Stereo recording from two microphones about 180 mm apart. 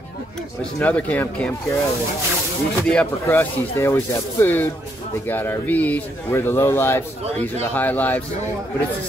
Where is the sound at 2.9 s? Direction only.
10° left (ahead or behind).